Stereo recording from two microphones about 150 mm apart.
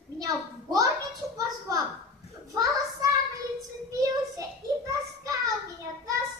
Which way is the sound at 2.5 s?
25° right (ahead or behind).